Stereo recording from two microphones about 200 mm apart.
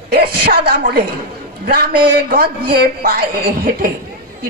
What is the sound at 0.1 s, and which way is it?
A man's voice, 55° right (ahead or behind).